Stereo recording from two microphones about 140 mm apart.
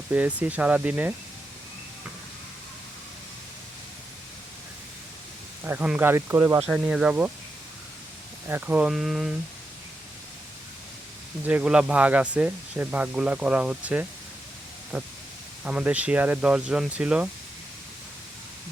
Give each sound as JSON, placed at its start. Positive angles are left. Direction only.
{"t": 0.1, "sound": "speech", "side_deg": -10}
{"t": 5.6, "sound": "speech", "side_deg": -10}
{"t": 6.7, "sound": "speech", "side_deg": -5}
{"t": 8.4, "sound": "speech", "side_deg": -15}
{"t": 11.4, "sound": "speech", "side_deg": -10}